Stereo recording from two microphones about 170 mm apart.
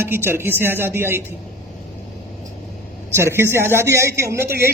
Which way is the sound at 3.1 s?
15° right (ahead or behind).